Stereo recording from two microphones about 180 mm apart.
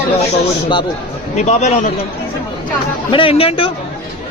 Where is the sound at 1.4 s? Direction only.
40° left (ahead or behind).